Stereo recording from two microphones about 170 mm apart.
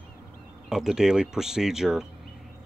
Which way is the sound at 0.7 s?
5° right (ahead or behind).